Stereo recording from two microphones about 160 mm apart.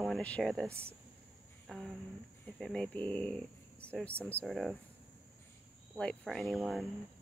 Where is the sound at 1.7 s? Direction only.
5° left (ahead or behind).